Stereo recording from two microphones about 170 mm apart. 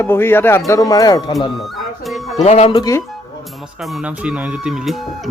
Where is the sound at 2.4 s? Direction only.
35° left (ahead or behind).